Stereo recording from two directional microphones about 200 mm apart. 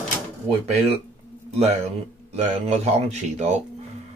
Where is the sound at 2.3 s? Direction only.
35° right (ahead or behind).